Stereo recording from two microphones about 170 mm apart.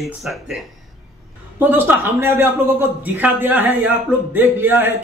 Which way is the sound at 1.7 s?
10° right (ahead or behind).